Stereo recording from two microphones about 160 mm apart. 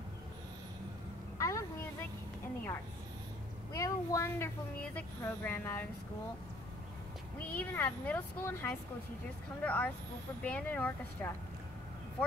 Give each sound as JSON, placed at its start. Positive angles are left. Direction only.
{"t": 1.4, "sound": "a sound", "side_deg": 20}
{"t": 3.7, "sound": "speech", "side_deg": 20}
{"t": 7.5, "sound": "speech", "side_deg": 10}